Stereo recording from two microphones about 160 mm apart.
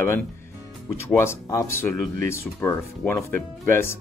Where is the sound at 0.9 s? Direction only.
15° left (ahead or behind).